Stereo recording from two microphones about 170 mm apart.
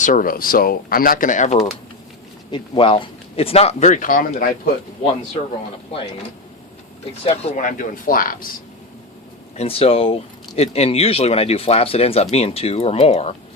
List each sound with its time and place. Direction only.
0.0 s speech: 55° left (ahead or behind)
2.5 s speech: 30° left (ahead or behind); by 4.7 s 55° left (ahead or behind)
7.5 s speech: 50° left (ahead or behind)
9.6 s speech: 35° left (ahead or behind)